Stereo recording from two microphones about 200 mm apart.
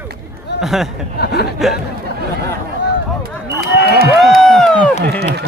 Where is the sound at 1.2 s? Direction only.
55° left (ahead or behind).